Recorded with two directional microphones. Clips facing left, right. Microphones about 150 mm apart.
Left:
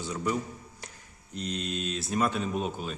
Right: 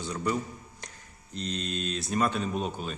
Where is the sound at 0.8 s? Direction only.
5° left (ahead or behind).